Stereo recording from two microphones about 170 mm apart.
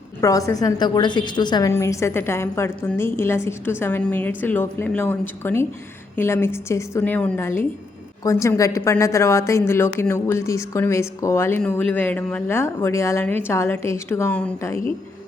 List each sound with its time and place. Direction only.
0.2 s a woman's voice: 20° left (ahead or behind)